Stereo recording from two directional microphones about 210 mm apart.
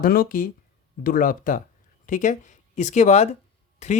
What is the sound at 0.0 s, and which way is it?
Speech, 45° left (ahead or behind).